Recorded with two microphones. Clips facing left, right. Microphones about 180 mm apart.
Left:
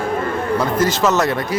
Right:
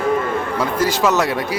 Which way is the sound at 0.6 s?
10° right (ahead or behind).